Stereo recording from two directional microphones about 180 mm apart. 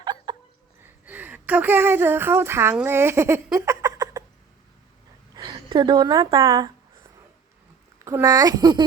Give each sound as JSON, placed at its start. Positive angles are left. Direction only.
{"t": 0.0, "sound": "a sound", "side_deg": -25}
{"t": 0.8, "sound": "speech", "side_deg": -10}
{"t": 5.3, "sound": "a woman's voice", "side_deg": -20}
{"t": 8.0, "sound": "speech", "side_deg": -20}